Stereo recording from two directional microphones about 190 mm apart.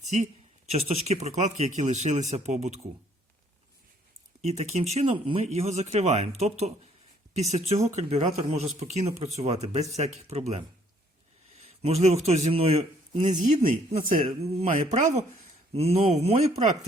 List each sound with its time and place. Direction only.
0.7 s speech: 35° right (ahead or behind)
4.4 s speech: 35° right (ahead or behind)
11.6 s a man's voice: 35° right (ahead or behind)
14.2 s speech: 30° right (ahead or behind)